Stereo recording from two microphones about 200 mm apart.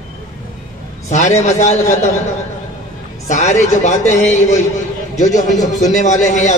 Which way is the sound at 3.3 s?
35° left (ahead or behind).